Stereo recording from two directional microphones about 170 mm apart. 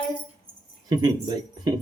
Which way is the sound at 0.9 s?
25° right (ahead or behind).